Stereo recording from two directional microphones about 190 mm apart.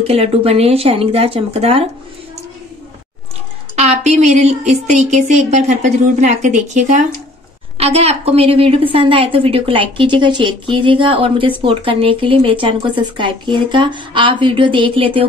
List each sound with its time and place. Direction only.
0.0 s speech: 30° right (ahead or behind)
3.7 s a woman's voice: 35° right (ahead or behind)